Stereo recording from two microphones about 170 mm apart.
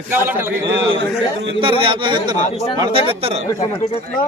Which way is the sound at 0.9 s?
90° right.